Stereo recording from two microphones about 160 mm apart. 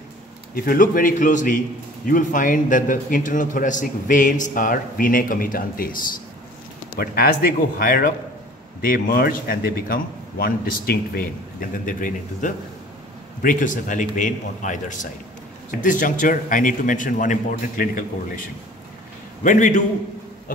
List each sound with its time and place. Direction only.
0.7 s a man's voice: 60° left (ahead or behind)
7.0 s a man's voice: 70° left (ahead or behind)
11.8 s a man's voice: 55° left (ahead or behind)
19.4 s a man's voice: 50° left (ahead or behind)